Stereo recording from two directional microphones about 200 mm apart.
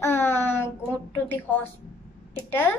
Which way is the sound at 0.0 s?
10° left (ahead or behind).